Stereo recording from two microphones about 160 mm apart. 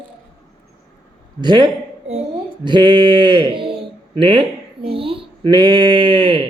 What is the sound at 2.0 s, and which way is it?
Speech, 40° right (ahead or behind).